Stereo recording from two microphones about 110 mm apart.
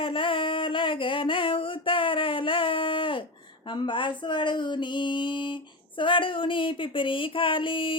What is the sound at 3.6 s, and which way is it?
Speech, 45° left (ahead or behind).